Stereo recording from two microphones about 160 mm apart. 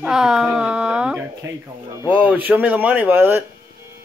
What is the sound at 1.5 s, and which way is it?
Speech, 15° right (ahead or behind).